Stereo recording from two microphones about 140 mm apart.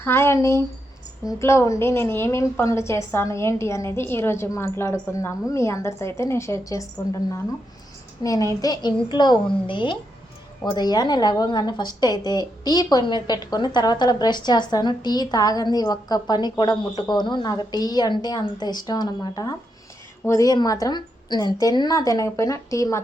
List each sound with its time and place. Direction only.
0.0 s a woman's voice: 15° left (ahead or behind)
8.2 s a woman's voice: 25° left (ahead or behind)